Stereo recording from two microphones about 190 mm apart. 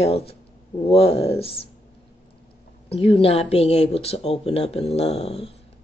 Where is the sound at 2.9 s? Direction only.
30° left (ahead or behind).